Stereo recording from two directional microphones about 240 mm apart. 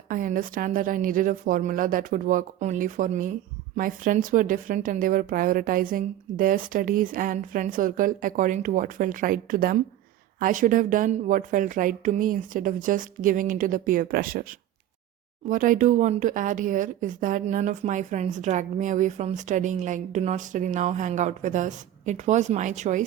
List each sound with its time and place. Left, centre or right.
0.1 s speech: right
15.4 s speech: right